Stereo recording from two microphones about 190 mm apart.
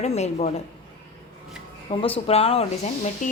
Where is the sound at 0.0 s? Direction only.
35° left (ahead or behind).